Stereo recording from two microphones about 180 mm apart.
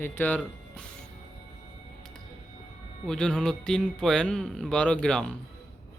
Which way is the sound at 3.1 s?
5° left (ahead or behind).